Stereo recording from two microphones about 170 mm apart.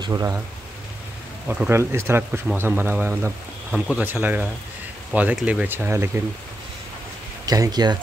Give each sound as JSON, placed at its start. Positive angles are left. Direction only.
{"t": 0.0, "sound": "speech", "side_deg": -20}
{"t": 1.5, "sound": "speech", "side_deg": -10}
{"t": 7.4, "sound": "speech", "side_deg": -20}